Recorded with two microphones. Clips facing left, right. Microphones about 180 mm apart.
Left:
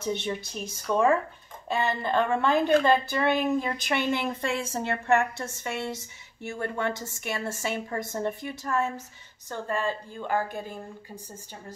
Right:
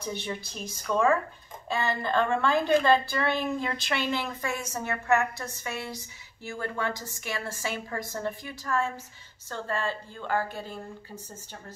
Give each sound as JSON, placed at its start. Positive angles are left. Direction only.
{"t": 0.0, "sound": "a woman's voice", "side_deg": 20}